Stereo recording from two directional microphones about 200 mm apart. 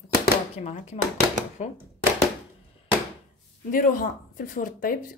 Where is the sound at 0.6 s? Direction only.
35° left (ahead or behind).